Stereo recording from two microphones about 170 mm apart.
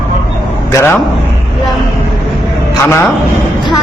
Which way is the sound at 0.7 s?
15° left (ahead or behind).